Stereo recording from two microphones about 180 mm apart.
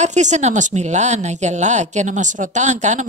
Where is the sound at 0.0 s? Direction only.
40° right (ahead or behind).